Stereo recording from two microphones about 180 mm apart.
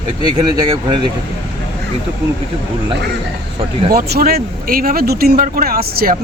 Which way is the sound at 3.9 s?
60° right (ahead or behind).